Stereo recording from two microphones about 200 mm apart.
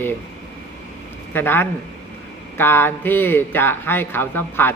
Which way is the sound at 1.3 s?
10° left (ahead or behind).